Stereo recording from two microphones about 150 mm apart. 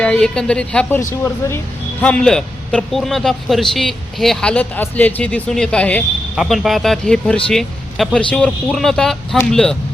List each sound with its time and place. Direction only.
0.0 s a man's voice: 5° left (ahead or behind)